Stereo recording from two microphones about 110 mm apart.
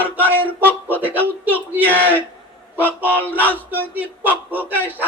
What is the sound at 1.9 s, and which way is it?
Speech, 15° left (ahead or behind).